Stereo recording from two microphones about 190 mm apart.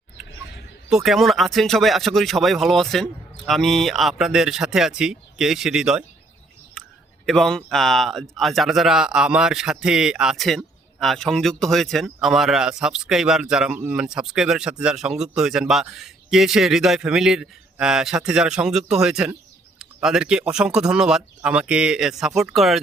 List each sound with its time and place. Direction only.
0.3 s a sound: 75° left (ahead or behind)
0.9 s a man's voice: centre (ahead or behind)
7.3 s a man's voice: centre (ahead or behind)